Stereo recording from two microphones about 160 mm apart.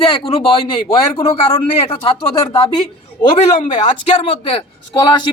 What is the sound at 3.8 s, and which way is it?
Speech, 40° left (ahead or behind).